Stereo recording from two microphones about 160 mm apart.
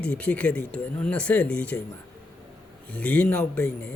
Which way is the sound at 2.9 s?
5° left (ahead or behind).